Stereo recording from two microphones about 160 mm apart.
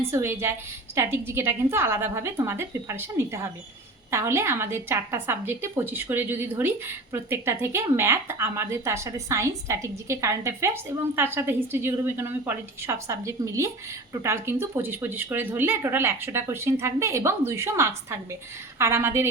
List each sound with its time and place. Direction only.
0.1 s a woman's voice: 15° right (ahead or behind)